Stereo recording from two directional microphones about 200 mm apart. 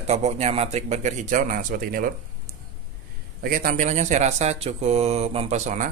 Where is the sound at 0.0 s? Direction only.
30° right (ahead or behind).